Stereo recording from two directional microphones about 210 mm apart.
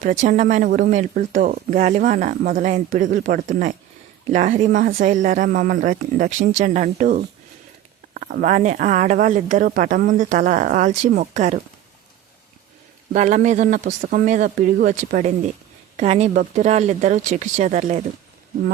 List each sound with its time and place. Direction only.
0.0 s speech: 35° right (ahead or behind)
13.1 s speech: 35° right (ahead or behind)